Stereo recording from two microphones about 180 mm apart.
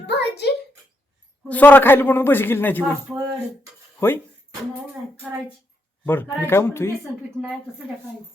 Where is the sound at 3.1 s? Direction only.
Centre (ahead or behind).